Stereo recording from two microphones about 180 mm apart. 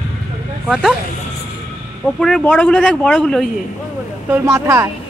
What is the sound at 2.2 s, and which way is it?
Speech, 5° left (ahead or behind).